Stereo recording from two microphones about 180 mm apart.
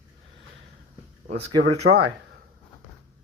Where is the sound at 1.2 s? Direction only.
65° right (ahead or behind).